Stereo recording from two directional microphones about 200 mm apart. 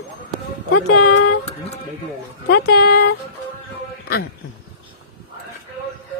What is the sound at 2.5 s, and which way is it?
Speech, 55° left (ahead or behind).